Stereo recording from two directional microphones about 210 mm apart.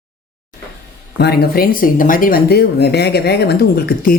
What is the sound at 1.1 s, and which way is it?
A woman's voice, 50° left (ahead or behind).